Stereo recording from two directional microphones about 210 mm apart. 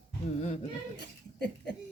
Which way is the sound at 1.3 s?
50° left (ahead or behind).